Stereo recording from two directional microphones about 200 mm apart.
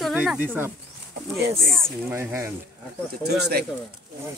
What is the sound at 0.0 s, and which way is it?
Speech, centre (ahead or behind).